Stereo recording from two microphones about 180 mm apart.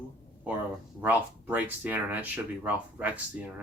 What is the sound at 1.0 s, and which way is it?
Speech, 10° right (ahead or behind).